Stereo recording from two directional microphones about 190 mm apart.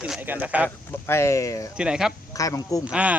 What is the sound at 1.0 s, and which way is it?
Speech, 15° left (ahead or behind).